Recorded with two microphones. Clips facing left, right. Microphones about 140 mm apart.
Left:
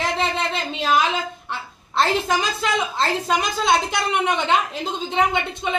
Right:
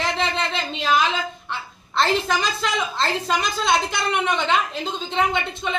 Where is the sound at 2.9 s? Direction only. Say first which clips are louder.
Left 2 dB; 5° left (ahead or behind).